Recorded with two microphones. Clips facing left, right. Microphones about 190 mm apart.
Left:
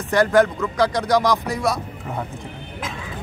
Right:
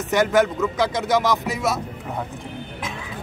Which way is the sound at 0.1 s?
20° right (ahead or behind).